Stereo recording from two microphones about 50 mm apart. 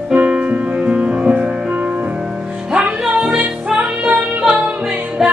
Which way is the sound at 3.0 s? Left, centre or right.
Centre.